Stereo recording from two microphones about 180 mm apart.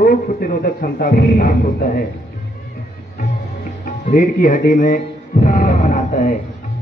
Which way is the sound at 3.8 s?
50° left (ahead or behind).